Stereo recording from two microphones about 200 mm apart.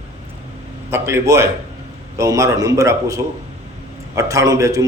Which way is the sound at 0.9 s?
15° right (ahead or behind).